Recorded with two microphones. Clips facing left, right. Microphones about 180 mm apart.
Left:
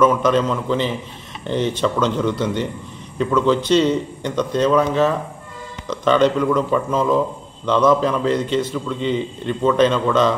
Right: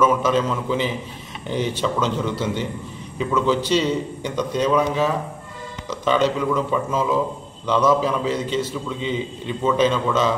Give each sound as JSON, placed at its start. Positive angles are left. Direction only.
{"t": 0.0, "sound": "a man's voice", "side_deg": -5}